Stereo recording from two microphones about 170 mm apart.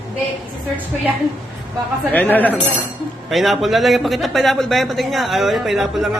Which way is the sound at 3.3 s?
Centre (ahead or behind).